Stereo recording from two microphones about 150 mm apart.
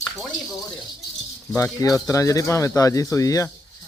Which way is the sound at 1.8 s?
20° left (ahead or behind).